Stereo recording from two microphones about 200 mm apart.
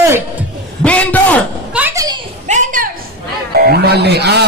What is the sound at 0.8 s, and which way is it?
Speech, 5° left (ahead or behind).